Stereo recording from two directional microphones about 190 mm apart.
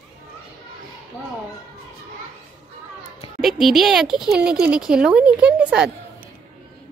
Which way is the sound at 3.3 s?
Centre (ahead or behind).